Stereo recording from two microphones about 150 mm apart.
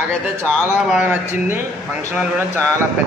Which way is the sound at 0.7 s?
5° right (ahead or behind).